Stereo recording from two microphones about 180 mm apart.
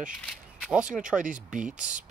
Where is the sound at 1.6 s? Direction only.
45° right (ahead or behind).